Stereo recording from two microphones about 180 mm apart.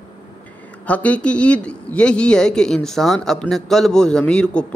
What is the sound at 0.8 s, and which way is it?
A man's voice, 10° left (ahead or behind).